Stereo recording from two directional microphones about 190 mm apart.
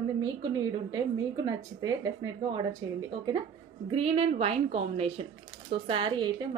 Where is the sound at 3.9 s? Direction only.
30° right (ahead or behind).